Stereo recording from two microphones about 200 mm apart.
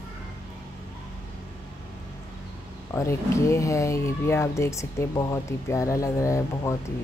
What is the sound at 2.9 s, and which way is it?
Speech, 15° left (ahead or behind).